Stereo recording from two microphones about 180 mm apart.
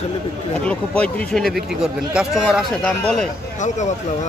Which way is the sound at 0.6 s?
5° left (ahead or behind).